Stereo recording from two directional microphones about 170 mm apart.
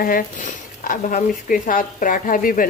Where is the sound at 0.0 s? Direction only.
55° left (ahead or behind).